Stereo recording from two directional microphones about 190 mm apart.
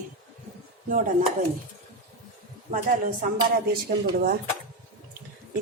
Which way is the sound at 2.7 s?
45° right (ahead or behind).